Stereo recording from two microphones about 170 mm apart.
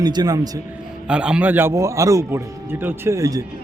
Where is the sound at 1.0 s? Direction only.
5° right (ahead or behind).